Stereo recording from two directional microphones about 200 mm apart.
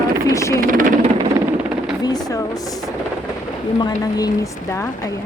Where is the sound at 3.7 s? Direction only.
20° left (ahead or behind).